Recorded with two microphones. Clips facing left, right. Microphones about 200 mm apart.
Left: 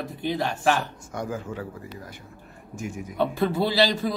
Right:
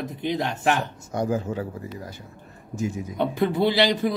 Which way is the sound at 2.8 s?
20° right (ahead or behind).